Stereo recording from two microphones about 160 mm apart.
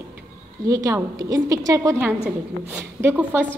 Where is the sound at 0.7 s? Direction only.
20° right (ahead or behind).